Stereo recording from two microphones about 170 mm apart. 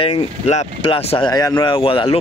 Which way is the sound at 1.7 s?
35° left (ahead or behind).